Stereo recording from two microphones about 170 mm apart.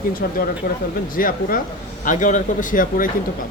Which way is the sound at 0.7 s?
60° left (ahead or behind).